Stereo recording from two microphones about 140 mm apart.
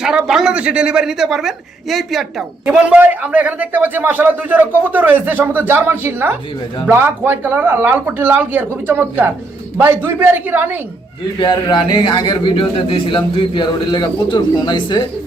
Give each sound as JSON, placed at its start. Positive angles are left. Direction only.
{"t": 0.0, "sound": "a woman's voice", "side_deg": -5}
{"t": 11.3, "sound": "speech", "side_deg": 35}